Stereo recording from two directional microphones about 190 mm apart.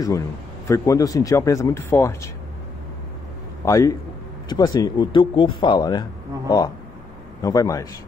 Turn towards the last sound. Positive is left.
turn(degrees=15)  # may be behind; listen again after turning